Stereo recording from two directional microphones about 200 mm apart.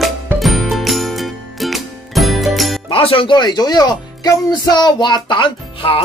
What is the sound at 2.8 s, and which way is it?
Speech, 25° left (ahead or behind).